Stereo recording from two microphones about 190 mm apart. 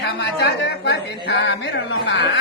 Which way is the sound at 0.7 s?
65° left (ahead or behind).